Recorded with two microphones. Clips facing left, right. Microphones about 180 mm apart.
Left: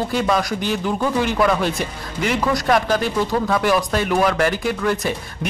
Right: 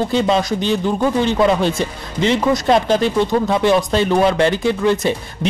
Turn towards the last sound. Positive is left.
turn(degrees=-25)  # may be behind; listen again after turning